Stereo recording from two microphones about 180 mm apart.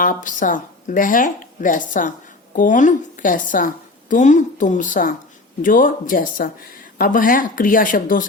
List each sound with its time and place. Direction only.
0.0 s speech: 50° left (ahead or behind)